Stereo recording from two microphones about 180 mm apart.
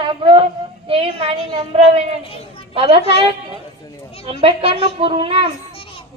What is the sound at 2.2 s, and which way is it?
Speech, 30° left (ahead or behind).